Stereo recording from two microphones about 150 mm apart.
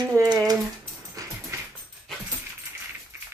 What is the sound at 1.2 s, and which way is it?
Dog, 25° right (ahead or behind).